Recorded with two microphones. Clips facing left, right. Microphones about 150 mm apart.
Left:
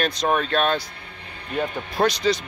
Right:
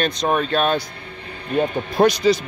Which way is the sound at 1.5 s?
25° right (ahead or behind).